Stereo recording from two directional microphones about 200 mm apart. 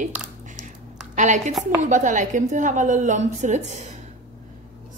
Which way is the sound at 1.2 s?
35° right (ahead or behind).